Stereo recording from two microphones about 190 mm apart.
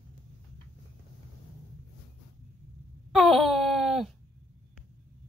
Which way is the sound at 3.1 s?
Centre (ahead or behind).